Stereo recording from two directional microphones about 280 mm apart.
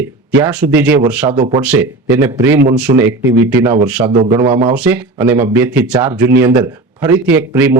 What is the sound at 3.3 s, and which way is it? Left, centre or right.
Speech, right.